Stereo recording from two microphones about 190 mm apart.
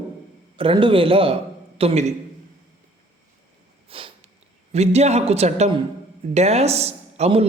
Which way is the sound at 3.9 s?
30° right (ahead or behind).